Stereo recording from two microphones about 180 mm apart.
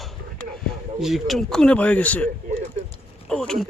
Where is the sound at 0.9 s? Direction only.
Centre (ahead or behind).